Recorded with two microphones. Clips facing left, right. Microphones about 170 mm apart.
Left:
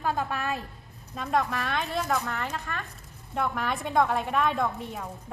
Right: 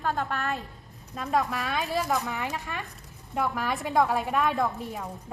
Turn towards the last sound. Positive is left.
turn(degrees=0)  # may be behind; listen again after turning